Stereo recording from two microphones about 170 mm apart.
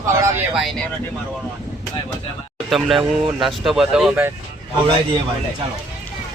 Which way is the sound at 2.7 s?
Centre (ahead or behind).